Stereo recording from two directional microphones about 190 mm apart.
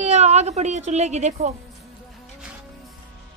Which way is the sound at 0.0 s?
35° right (ahead or behind).